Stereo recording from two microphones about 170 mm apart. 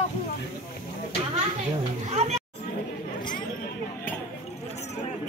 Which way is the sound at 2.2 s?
40° right (ahead or behind).